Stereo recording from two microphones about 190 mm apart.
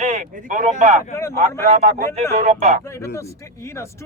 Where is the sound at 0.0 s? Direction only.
35° right (ahead or behind).